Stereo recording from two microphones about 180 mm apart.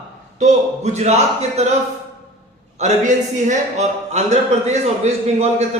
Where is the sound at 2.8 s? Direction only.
45° right (ahead or behind).